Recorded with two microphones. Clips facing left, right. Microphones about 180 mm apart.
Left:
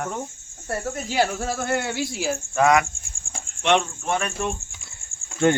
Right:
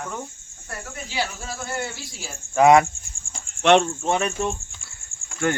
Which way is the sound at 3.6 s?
35° right (ahead or behind).